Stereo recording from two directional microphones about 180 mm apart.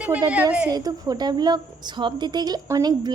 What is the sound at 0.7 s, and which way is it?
A woman's voice, 20° right (ahead or behind).